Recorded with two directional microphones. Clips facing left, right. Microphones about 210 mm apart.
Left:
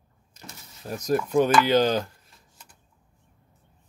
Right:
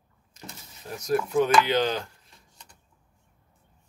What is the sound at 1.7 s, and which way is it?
Speech, 40° left (ahead or behind).